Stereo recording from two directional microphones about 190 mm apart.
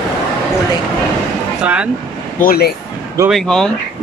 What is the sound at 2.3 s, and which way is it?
Speech, 50° left (ahead or behind).